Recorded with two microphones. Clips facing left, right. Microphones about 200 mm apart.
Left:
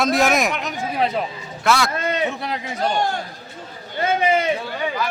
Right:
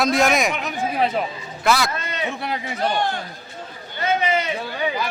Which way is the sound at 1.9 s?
50° left (ahead or behind).